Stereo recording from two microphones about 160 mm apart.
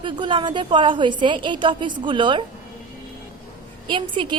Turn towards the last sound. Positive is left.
turn(degrees=-30)  # may be behind; listen again after turning